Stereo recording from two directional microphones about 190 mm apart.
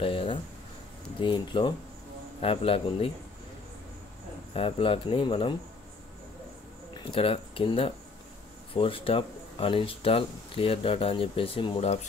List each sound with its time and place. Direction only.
0.0 s a sound: 30° left (ahead or behind)
1.2 s speech: 25° left (ahead or behind)
4.6 s speech: 30° left (ahead or behind)
6.9 s speech: 30° left (ahead or behind)